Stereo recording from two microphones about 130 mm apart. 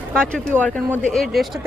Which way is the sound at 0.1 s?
5° left (ahead or behind).